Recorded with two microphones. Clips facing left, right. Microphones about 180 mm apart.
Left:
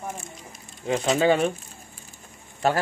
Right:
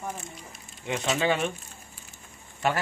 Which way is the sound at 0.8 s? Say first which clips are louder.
Left 6 dB; 35° left (ahead or behind).